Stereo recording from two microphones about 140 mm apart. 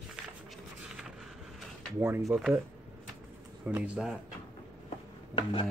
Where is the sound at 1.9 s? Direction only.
15° right (ahead or behind).